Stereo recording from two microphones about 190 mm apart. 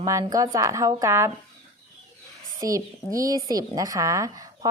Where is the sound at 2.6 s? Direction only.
15° right (ahead or behind).